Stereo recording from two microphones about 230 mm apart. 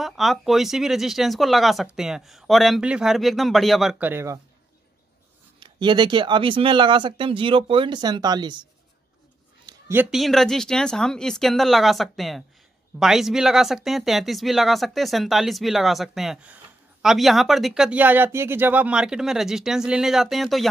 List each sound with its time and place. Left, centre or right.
0.0 s speech: centre
5.6 s speech: centre
9.7 s speech: centre